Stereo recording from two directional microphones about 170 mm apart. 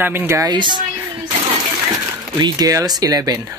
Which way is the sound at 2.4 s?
20° right (ahead or behind).